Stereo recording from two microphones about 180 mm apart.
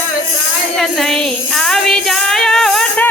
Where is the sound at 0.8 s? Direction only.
Centre (ahead or behind).